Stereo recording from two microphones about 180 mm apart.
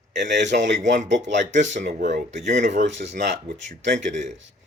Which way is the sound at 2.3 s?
40° right (ahead or behind).